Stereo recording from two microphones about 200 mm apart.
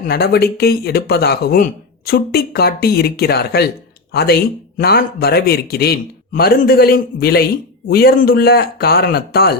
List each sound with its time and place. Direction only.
0.0 s speech: 50° left (ahead or behind)